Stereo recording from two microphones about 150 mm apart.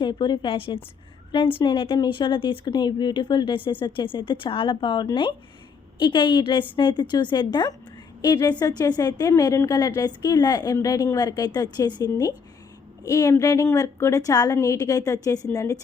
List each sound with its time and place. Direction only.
0.0 s a woman's voice: 30° left (ahead or behind)